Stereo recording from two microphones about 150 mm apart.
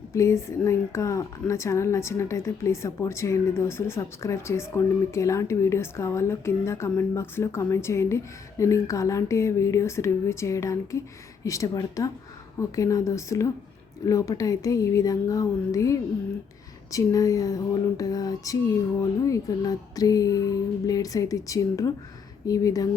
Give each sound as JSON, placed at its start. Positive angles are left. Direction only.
{"t": 0.1, "sound": "speech", "side_deg": 20}